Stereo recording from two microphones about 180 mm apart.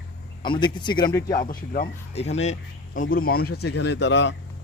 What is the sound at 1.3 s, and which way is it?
Speech, 55° left (ahead or behind).